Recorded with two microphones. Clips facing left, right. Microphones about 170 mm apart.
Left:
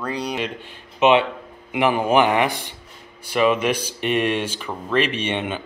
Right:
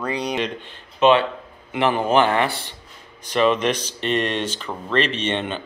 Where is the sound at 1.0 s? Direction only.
20° left (ahead or behind).